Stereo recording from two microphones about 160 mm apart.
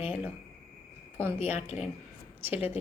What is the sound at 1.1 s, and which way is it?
Speech, 15° right (ahead or behind).